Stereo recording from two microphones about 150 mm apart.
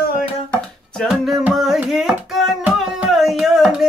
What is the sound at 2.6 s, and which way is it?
Tabla, 5° right (ahead or behind).